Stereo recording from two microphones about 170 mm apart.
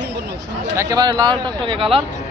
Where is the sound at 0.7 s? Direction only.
20° right (ahead or behind).